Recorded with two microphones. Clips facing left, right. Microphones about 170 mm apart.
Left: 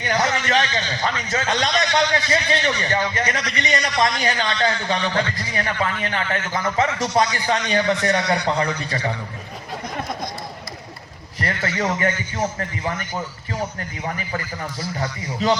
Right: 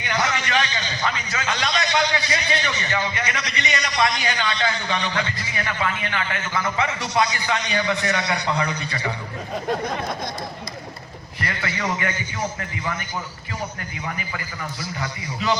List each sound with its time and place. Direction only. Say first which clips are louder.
0.0 s a sound: left 3 dB; 40° left (ahead or behind)
1.0 s a man's voice: left 2 dB; 40° left (ahead or behind)
11.3 s a man's voice: left 4 dB; 40° left (ahead or behind)
15.0 s a man's voice: left 4 dB; 35° left (ahead or behind)